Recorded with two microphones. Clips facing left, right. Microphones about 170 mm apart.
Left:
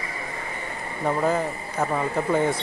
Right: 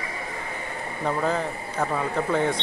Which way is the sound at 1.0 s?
5° left (ahead or behind).